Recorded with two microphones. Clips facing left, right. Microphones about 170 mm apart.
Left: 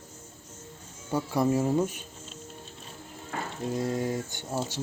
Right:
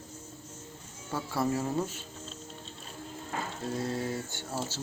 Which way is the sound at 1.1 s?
15° left (ahead or behind).